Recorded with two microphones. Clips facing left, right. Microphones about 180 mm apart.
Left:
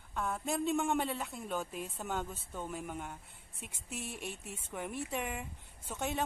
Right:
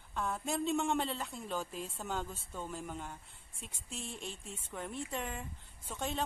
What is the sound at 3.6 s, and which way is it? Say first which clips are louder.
Speech: left 2 dB; 65° left (ahead or behind).